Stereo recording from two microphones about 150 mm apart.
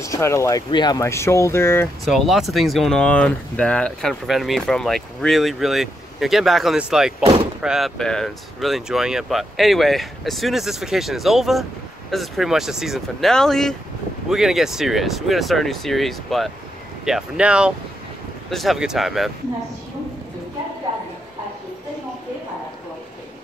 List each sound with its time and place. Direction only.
0.0 s speech: 20° left (ahead or behind)
2.0 s speech: centre (ahead or behind)